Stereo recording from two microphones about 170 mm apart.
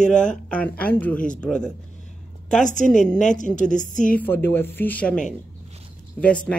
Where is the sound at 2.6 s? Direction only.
45° left (ahead or behind).